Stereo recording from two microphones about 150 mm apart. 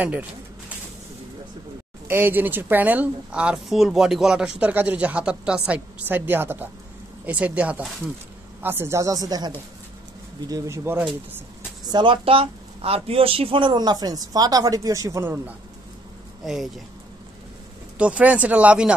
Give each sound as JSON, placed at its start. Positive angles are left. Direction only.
{"t": 0.0, "sound": "speech", "side_deg": -10}
{"t": 2.0, "sound": "speech", "side_deg": -15}
{"t": 10.5, "sound": "speech", "side_deg": -20}
{"t": 11.9, "sound": "speech", "side_deg": -35}
{"t": 16.4, "sound": "speech", "side_deg": 0}
{"t": 17.9, "sound": "speech", "side_deg": -10}